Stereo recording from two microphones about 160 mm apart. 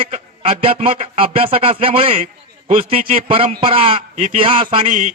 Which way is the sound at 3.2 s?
35° right (ahead or behind).